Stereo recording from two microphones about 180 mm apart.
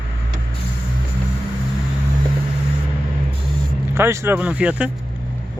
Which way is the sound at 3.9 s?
15° right (ahead or behind).